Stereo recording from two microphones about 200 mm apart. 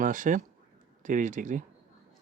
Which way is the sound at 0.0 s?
40° right (ahead or behind).